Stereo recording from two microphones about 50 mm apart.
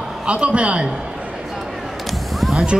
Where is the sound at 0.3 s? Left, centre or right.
Right.